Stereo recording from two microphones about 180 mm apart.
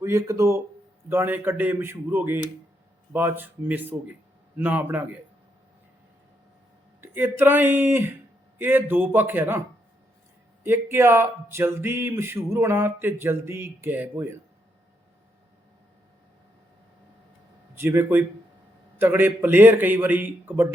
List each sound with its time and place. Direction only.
0.0 s speech: 15° right (ahead or behind)
7.0 s speech: 10° right (ahead or behind)
17.7 s speech: 10° right (ahead or behind)